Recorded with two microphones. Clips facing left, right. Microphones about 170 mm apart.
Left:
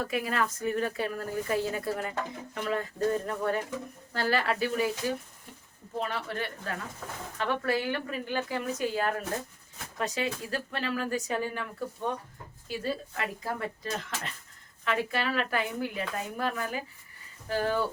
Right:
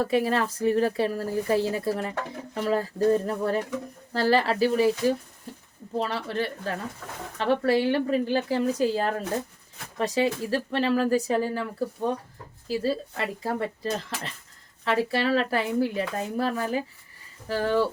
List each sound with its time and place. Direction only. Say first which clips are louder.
0.0 s speech: right 6 dB; 35° right (ahead or behind)